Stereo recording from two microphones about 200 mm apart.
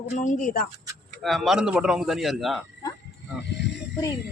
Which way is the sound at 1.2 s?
Centre (ahead or behind).